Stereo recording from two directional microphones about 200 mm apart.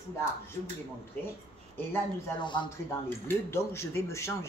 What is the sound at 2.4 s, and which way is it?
Speech, 25° left (ahead or behind).